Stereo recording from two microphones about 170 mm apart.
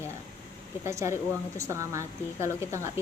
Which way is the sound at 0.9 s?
15° right (ahead or behind).